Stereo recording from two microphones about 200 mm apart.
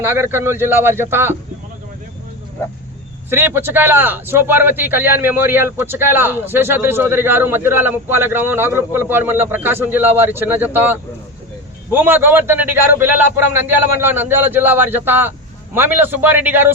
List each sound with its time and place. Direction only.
0.0 s a man's voice: 10° right (ahead or behind)
3.2 s a man's voice: 10° right (ahead or behind)